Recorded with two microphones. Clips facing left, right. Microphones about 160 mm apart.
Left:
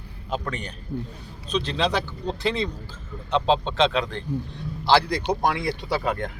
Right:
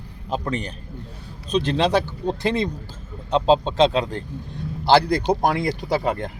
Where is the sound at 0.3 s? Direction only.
30° right (ahead or behind).